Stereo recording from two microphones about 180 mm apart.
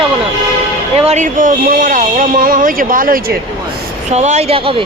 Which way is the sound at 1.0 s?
40° right (ahead or behind).